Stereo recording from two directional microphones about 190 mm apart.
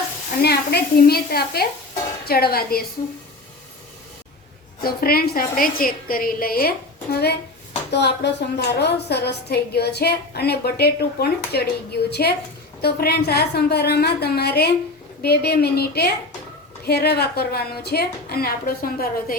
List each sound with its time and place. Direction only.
0.4 s a woman's voice: 55° left (ahead or behind)
4.8 s a woman's voice: 55° left (ahead or behind)
12.8 s a woman's voice: 55° left (ahead or behind)